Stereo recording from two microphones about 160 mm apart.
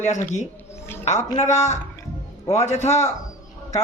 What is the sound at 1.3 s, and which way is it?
Speech, 45° left (ahead or behind).